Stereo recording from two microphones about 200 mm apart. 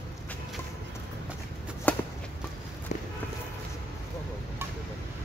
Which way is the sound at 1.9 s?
5° left (ahead or behind).